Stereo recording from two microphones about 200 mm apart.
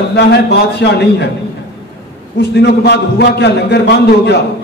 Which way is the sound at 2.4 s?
55° left (ahead or behind).